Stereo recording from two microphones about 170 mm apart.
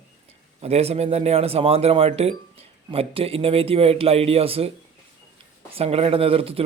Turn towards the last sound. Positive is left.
turn(degrees=-35)  # may be behind; listen again after turning